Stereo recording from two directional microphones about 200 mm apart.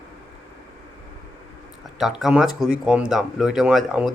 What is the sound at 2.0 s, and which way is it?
A man's voice, centre (ahead or behind).